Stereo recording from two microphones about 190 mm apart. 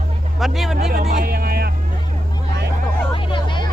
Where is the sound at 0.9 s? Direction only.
50° right (ahead or behind).